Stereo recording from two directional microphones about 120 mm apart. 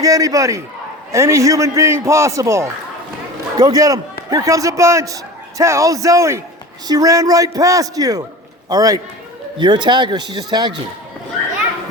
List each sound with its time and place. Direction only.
0.0 s a man's voice: 30° right (ahead or behind)